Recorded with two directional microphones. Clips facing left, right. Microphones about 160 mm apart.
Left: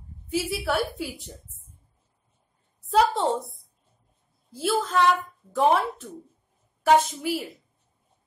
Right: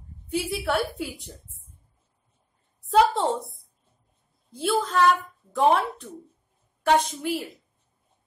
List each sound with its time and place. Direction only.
0.3 s a woman's voice: centre (ahead or behind)
2.8 s a woman's voice: centre (ahead or behind)